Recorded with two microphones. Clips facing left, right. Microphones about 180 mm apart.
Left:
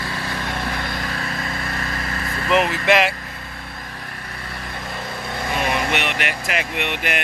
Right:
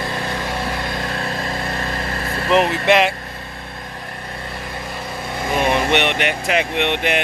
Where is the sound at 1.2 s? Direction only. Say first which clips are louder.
Right 4 dB; 30° right (ahead or behind).